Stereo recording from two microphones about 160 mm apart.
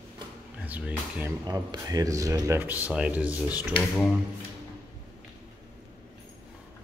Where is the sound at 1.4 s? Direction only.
20° right (ahead or behind).